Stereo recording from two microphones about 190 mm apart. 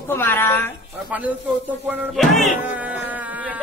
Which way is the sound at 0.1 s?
10° left (ahead or behind).